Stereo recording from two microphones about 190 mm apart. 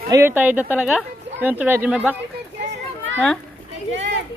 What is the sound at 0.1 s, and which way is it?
Speech, 10° right (ahead or behind).